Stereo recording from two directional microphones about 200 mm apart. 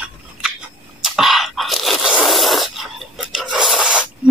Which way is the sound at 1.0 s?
Centre (ahead or behind).